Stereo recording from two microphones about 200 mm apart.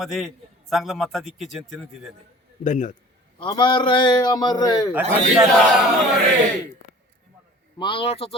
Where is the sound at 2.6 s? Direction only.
40° left (ahead or behind).